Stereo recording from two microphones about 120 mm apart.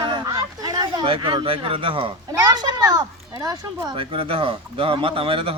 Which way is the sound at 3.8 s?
45° right (ahead or behind).